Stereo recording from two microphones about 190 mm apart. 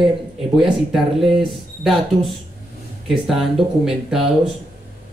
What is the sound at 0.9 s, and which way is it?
A man's voice, centre (ahead or behind).